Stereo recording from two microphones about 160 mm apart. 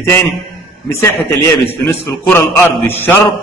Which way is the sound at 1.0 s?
15° left (ahead or behind).